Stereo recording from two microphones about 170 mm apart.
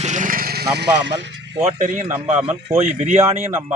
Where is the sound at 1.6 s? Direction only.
45° right (ahead or behind).